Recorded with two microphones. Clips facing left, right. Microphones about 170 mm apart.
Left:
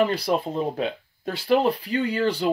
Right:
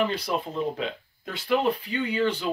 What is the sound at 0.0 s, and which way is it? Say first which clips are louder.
Speech: left 4 dB; 35° left (ahead or behind).